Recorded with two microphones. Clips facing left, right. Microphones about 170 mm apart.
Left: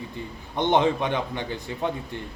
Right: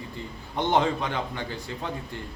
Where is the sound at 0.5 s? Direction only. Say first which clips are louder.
Left 3 dB; 20° left (ahead or behind).